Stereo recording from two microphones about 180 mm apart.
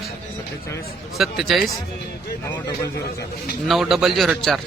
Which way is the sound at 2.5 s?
15° left (ahead or behind).